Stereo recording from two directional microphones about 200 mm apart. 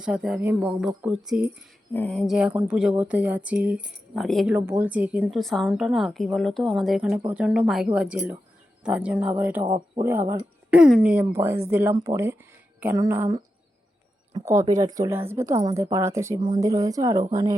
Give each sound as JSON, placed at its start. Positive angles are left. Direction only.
{"t": 0.0, "sound": "a woman's voice", "side_deg": -5}
{"t": 1.9, "sound": "a woman's voice", "side_deg": 5}
{"t": 4.5, "sound": "a woman's voice", "side_deg": -10}
{"t": 9.6, "sound": "speech", "side_deg": -30}
{"t": 10.0, "sound": "speech", "side_deg": -15}